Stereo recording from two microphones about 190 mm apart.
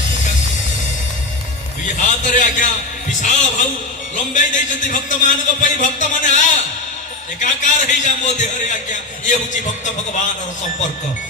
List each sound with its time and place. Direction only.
2.0 s a man's voice: 40° left (ahead or behind)